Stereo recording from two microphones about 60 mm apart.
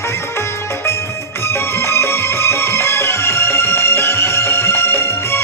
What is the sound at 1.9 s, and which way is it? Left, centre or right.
Music, left.